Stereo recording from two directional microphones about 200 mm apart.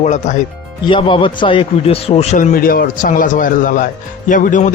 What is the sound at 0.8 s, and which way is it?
A man's voice, 25° left (ahead or behind).